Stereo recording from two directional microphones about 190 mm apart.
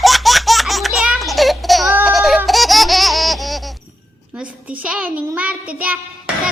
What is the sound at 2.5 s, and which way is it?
Laughter, centre (ahead or behind).